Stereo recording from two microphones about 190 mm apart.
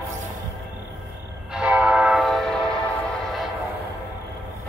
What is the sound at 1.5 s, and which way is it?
Train, 5° right (ahead or behind).